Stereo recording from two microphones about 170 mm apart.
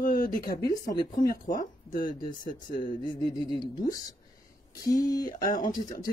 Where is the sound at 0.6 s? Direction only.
20° left (ahead or behind).